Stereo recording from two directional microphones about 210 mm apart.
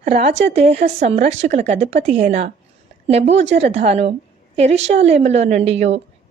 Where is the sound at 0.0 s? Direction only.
40° right (ahead or behind).